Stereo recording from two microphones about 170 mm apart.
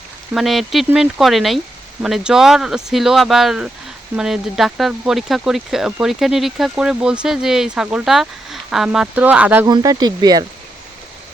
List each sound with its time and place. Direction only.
0.3 s speech: centre (ahead or behind)
9.6 s speech: 25° right (ahead or behind)